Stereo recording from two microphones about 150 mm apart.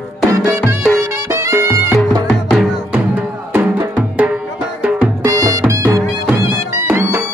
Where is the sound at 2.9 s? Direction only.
15° right (ahead or behind).